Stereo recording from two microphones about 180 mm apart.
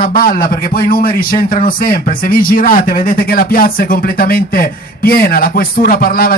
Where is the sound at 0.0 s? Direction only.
50° left (ahead or behind).